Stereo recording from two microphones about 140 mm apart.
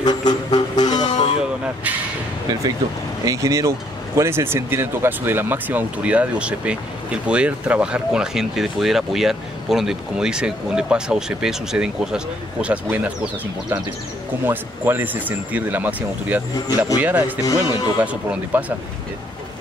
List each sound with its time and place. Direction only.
0.0 s music: 30° left (ahead or behind)
3.3 s speech: 20° right (ahead or behind)